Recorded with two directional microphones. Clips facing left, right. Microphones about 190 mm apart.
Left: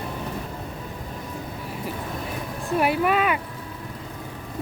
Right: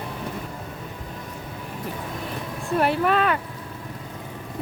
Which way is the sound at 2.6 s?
10° left (ahead or behind).